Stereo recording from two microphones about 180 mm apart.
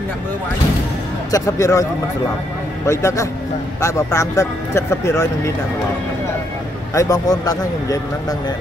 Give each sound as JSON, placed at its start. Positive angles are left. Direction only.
{"t": 1.3, "sound": "speech", "side_deg": 20}
{"t": 2.9, "sound": "speech", "side_deg": 15}
{"t": 6.9, "sound": "speech", "side_deg": 20}